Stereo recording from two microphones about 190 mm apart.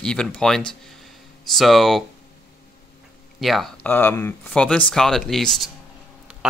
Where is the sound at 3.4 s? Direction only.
Centre (ahead or behind).